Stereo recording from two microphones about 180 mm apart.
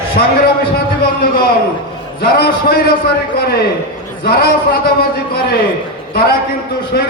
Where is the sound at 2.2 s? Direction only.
60° left (ahead or behind).